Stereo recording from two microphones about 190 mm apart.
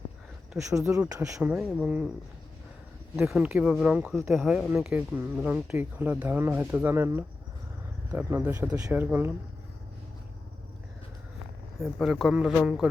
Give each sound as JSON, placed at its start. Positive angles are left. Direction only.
{"t": 0.5, "sound": "speech", "side_deg": -15}
{"t": 1.7, "sound": "speech", "side_deg": -5}
{"t": 3.2, "sound": "speech", "side_deg": -5}
{"t": 11.8, "sound": "speech", "side_deg": 0}